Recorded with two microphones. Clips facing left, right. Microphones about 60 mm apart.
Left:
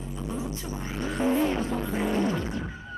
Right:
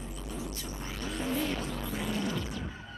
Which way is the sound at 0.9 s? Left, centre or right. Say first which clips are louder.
Left 8 dB; left.